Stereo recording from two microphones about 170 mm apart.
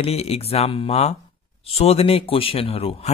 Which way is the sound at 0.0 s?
35° left (ahead or behind).